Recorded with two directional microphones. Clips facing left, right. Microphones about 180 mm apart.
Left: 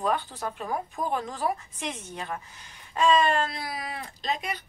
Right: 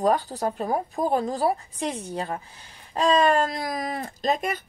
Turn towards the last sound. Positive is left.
turn(degrees=-50)  # may be behind; listen again after turning